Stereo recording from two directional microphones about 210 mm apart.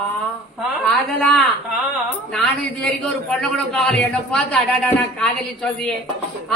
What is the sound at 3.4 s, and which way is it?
Speech, 5° left (ahead or behind).